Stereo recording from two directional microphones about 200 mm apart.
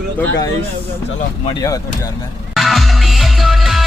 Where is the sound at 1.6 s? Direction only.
15° left (ahead or behind).